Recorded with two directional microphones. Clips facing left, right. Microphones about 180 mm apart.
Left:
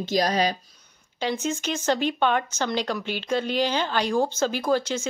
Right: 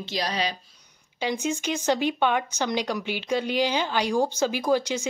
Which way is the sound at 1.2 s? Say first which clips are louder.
Even; 15° right (ahead or behind).